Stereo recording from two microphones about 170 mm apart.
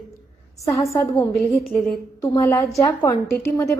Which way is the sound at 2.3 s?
15° left (ahead or behind).